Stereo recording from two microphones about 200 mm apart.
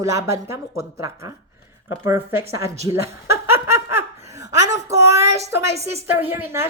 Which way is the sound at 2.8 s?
15° right (ahead or behind).